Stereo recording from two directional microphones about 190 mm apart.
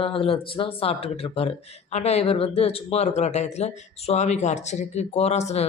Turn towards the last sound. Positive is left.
turn(degrees=35)  # may be behind; listen again after turning